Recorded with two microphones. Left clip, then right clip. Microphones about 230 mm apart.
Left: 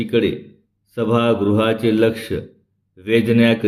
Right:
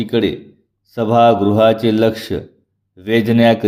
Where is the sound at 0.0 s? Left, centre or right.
Right.